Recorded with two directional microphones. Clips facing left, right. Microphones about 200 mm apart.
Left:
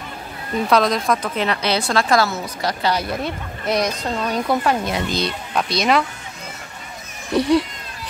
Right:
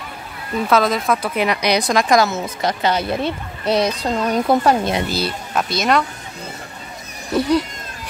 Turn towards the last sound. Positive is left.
turn(degrees=0)  # may be behind; listen again after turning